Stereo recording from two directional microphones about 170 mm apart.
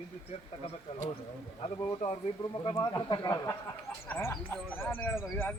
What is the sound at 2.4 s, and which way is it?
Speech, 25° left (ahead or behind).